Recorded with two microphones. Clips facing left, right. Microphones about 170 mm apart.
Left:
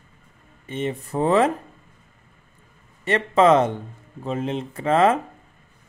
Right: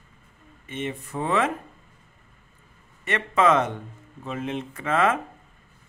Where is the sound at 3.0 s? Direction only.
30° left (ahead or behind).